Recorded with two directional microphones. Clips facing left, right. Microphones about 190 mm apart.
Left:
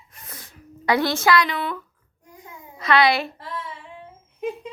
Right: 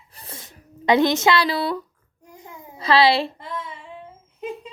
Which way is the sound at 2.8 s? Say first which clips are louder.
Right 2 dB; 30° right (ahead or behind).